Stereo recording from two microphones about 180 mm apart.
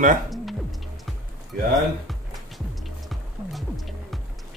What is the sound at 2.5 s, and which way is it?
Music, centre (ahead or behind).